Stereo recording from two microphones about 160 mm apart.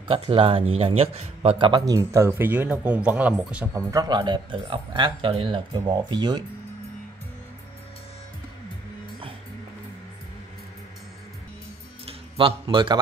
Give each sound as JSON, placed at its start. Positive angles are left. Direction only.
{"t": 0.1, "sound": "a man's voice", "side_deg": -35}
{"t": 3.7, "sound": "speech", "side_deg": -20}
{"t": 12.1, "sound": "a sound", "side_deg": -35}